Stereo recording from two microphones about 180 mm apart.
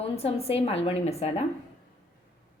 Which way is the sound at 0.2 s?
35° left (ahead or behind).